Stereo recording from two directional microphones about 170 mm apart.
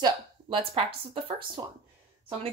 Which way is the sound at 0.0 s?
35° right (ahead or behind).